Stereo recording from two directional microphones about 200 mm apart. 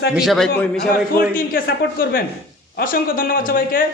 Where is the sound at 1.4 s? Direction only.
45° left (ahead or behind).